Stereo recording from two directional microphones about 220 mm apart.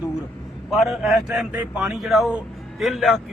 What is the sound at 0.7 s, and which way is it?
A man's voice, centre (ahead or behind).